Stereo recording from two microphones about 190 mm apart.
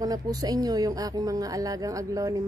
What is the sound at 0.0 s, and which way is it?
Speech, 20° right (ahead or behind).